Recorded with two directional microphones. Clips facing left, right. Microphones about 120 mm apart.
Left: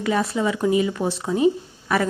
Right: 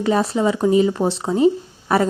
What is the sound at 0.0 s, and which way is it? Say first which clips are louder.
A woman's voice: right 4 dB; 30° right (ahead or behind).